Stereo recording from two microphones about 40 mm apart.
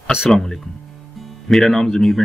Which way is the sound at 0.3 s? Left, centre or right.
Centre.